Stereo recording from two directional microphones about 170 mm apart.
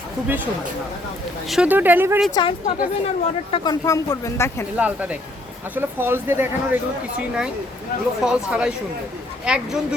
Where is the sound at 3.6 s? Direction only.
20° left (ahead or behind).